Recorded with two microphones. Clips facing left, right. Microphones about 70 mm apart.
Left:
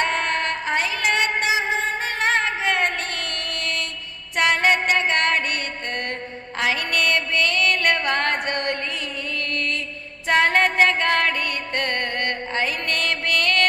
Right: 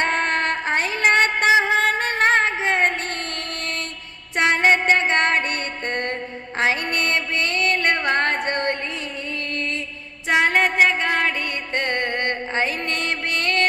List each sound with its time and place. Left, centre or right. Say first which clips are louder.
0.0 s music: right 2 dB; right
1.8 s music: right 4 dB; right
2.1 s music: right 2 dB; right
4.4 s music: right 1 dB; right
10.2 s music: even; centre
11.4 s music: right 1 dB; right